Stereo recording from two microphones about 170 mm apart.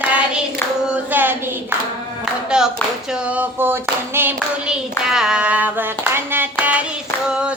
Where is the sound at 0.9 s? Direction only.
10° right (ahead or behind).